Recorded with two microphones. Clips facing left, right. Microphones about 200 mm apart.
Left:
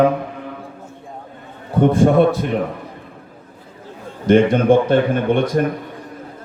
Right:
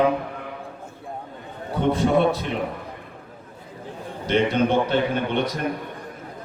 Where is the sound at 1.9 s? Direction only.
50° left (ahead or behind).